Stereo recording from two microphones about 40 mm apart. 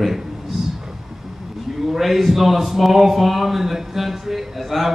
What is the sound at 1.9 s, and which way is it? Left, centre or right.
A man's voice, centre.